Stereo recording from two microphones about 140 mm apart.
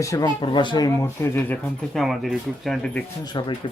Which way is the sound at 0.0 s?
25° left (ahead or behind).